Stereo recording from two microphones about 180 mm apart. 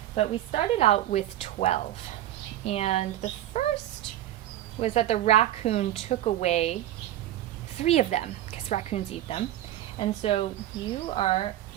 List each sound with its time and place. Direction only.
0.2 s a woman's voice: 35° left (ahead or behind)
4.8 s a woman's voice: 35° left (ahead or behind)
7.8 s a woman's voice: 35° left (ahead or behind)